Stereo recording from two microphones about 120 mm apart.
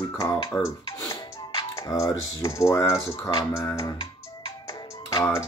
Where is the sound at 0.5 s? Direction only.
25° left (ahead or behind).